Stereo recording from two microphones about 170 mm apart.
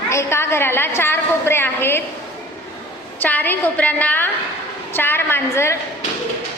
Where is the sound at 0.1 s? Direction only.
15° left (ahead or behind).